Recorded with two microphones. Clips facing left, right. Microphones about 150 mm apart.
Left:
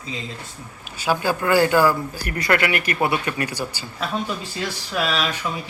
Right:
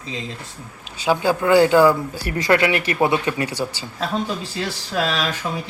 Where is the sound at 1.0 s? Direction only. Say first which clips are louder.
Right 3 dB; 20° right (ahead or behind).